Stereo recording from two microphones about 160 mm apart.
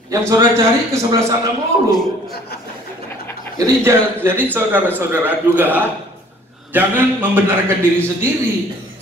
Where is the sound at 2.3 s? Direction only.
80° left.